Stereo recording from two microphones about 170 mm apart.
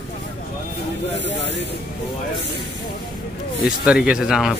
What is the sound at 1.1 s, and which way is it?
Speech, 90° left.